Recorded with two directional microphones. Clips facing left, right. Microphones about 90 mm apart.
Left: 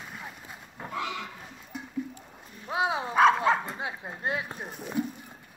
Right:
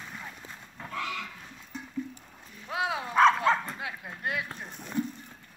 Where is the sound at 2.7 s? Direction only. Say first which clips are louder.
Left 3 dB; 25° left (ahead or behind).